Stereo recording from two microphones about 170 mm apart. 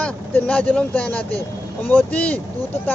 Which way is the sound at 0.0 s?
5° left (ahead or behind).